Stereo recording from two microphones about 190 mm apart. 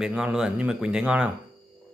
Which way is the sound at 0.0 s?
5° right (ahead or behind).